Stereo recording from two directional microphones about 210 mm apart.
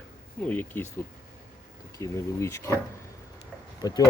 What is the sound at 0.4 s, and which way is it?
Speech, 10° left (ahead or behind).